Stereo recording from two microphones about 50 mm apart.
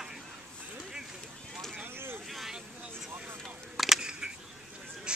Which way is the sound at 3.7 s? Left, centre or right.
Centre.